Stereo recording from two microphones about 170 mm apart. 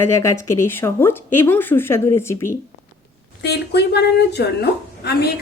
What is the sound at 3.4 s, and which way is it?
A woman's voice, 80° left.